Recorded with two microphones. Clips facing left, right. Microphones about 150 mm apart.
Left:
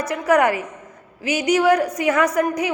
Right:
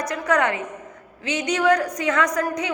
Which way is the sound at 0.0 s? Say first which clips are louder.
Left 4 dB; 30° left (ahead or behind).